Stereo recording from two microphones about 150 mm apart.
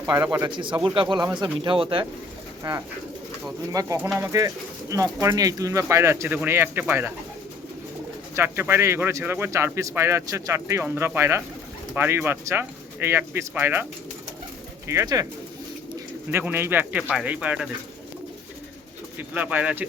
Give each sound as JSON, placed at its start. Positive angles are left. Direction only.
{"t": 0.1, "sound": "speech", "side_deg": -25}
{"t": 0.5, "sound": "speech", "side_deg": -30}
{"t": 8.4, "sound": "a man's voice", "side_deg": -15}
{"t": 14.8, "sound": "speech", "side_deg": -20}
{"t": 16.3, "sound": "a man's voice", "side_deg": -15}
{"t": 19.3, "sound": "a man's voice", "side_deg": -10}